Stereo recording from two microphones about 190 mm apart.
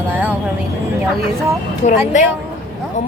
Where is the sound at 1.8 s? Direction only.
40° left (ahead or behind).